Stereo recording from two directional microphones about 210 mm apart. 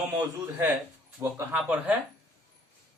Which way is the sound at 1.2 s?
10° right (ahead or behind).